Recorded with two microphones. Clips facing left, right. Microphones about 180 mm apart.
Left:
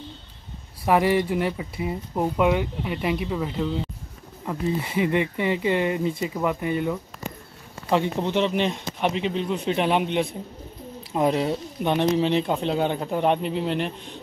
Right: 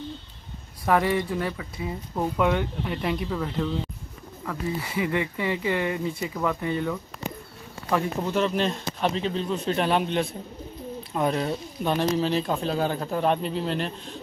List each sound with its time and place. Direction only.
0.8 s speech: 15° left (ahead or behind)
4.5 s speech: 25° left (ahead or behind)
11.1 s speech: 20° left (ahead or behind)